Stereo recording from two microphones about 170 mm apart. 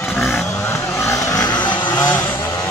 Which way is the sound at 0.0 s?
15° left (ahead or behind).